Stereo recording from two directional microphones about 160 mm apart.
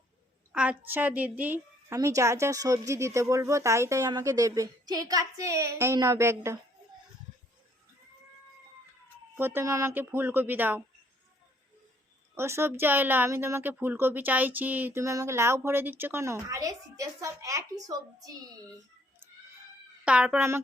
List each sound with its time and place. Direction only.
0.5 s a woman's voice: 5° right (ahead or behind)
9.3 s a woman's voice: 15° right (ahead or behind)
12.3 s a woman's voice: 15° right (ahead or behind)
20.1 s a woman's voice: 10° right (ahead or behind)